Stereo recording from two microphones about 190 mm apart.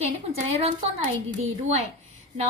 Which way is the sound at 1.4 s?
35° right (ahead or behind).